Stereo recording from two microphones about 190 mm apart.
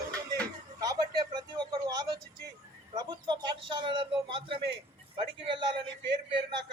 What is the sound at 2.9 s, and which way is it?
A man's voice, 20° right (ahead or behind).